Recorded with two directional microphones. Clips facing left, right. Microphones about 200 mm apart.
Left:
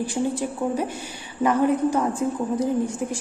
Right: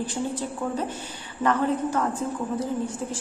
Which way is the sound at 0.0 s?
10° left (ahead or behind).